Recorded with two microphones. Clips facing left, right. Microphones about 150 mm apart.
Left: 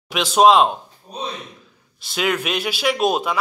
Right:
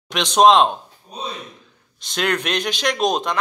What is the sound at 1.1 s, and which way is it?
Speech, 40° left (ahead or behind).